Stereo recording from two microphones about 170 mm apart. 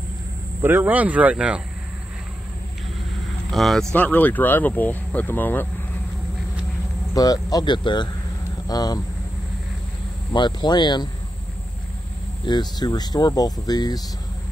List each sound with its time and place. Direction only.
0.6 s speech: 10° right (ahead or behind)
3.5 s speech: centre (ahead or behind)
7.2 s speech: 20° left (ahead or behind)
10.3 s speech: 25° left (ahead or behind)
12.4 s speech: 25° left (ahead or behind)